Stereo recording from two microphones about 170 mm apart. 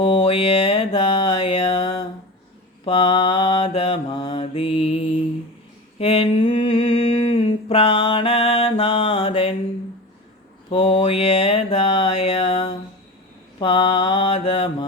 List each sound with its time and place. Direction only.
0.0 s mantra: 30° left (ahead or behind)
6.0 s a sound: 35° left (ahead or behind)
10.7 s mantra: 30° left (ahead or behind)